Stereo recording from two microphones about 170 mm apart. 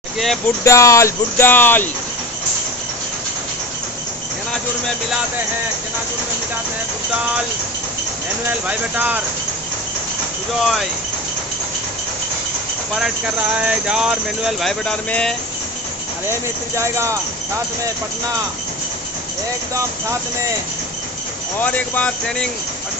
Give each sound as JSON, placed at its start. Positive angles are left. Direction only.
{"t": 0.7, "sound": "speech", "side_deg": 15}
{"t": 8.5, "sound": "speech", "side_deg": -10}
{"t": 10.6, "sound": "speech", "side_deg": 0}
{"t": 13.6, "sound": "speech", "side_deg": -5}
{"t": 16.3, "sound": "speech", "side_deg": -15}
{"t": 21.5, "sound": "speech", "side_deg": 10}